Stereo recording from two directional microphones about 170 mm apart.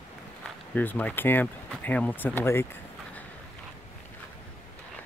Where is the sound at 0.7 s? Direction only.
10° left (ahead or behind).